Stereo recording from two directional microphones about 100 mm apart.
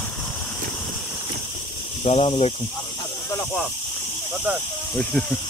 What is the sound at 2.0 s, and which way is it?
Speech, 85° left.